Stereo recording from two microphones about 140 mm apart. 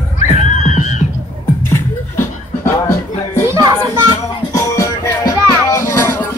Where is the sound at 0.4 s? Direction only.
55° left (ahead or behind).